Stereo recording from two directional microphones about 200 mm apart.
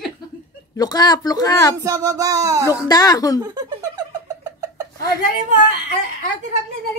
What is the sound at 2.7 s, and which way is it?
Speech, 20° left (ahead or behind).